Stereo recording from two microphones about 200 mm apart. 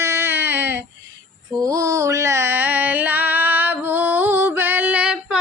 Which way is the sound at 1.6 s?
15° right (ahead or behind).